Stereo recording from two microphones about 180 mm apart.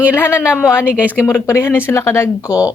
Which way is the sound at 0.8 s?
5° right (ahead or behind).